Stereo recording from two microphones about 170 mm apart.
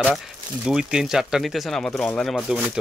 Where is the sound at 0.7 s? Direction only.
5° right (ahead or behind).